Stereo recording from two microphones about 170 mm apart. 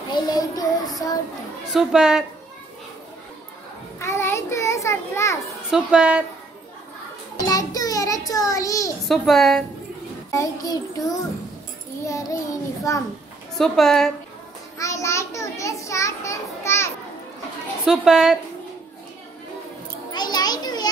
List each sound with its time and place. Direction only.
0.1 s child singing: 20° left (ahead or behind)
1.7 s a child's voice: centre (ahead or behind)
4.0 s a sound: 15° left (ahead or behind)
5.7 s a child's voice: 5° right (ahead or behind)
7.3 s child singing: 20° left (ahead or behind)
9.0 s a child's voice: centre (ahead or behind)
10.3 s child singing: 20° left (ahead or behind)
12.0 s a child's voice: 20° left (ahead or behind)
13.6 s a child's voice: centre (ahead or behind)
14.8 s children playing: 20° left (ahead or behind)
17.8 s a child's voice: 5° right (ahead or behind)
20.1 s children playing: 25° left (ahead or behind)